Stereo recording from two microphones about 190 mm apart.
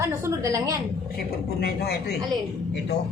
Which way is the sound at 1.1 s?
55° left (ahead or behind).